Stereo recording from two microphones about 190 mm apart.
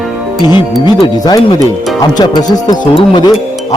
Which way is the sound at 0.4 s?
20° left (ahead or behind).